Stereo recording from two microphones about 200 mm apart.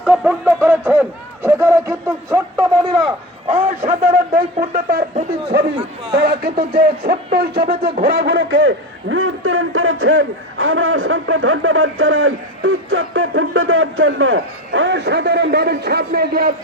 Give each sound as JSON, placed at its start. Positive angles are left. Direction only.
{"t": 0.0, "sound": "speech", "side_deg": 0}
{"t": 3.5, "sound": "a man's voice", "side_deg": -35}